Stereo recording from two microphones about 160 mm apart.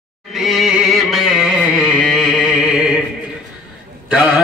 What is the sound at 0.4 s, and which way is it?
Music, centre (ahead or behind).